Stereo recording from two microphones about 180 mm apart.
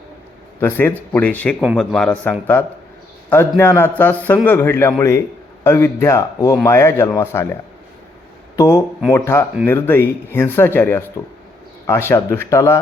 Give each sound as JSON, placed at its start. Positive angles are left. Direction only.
{"t": 0.6, "sound": "speech", "side_deg": 10}